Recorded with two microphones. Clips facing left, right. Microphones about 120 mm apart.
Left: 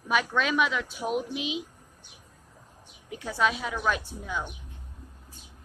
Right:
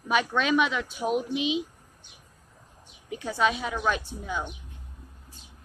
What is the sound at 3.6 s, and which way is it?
Speech, 15° right (ahead or behind).